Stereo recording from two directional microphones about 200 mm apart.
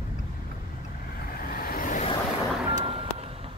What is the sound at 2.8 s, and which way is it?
Vehicle, 30° right (ahead or behind).